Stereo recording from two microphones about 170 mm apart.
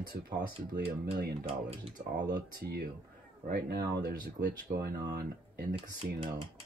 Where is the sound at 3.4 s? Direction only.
70° right (ahead or behind).